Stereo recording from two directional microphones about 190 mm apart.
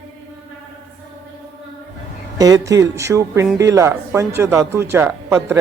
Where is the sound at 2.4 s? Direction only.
20° right (ahead or behind).